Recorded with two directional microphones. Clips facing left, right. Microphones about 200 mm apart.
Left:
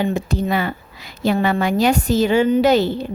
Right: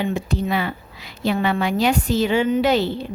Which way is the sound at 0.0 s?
45° left (ahead or behind).